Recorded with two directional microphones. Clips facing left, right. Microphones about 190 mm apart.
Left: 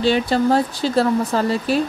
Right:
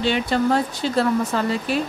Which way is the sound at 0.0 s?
35° left (ahead or behind).